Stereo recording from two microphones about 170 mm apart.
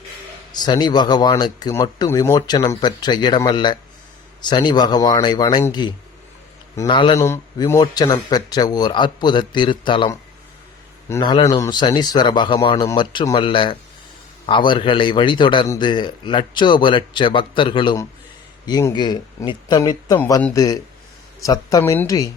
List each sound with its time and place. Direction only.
0.5 s a man's voice: 25° left (ahead or behind)
6.8 s a man's voice: 30° left (ahead or behind)
7.2 s a man's voice: 15° left (ahead or behind)
11.2 s a man's voice: 25° left (ahead or behind)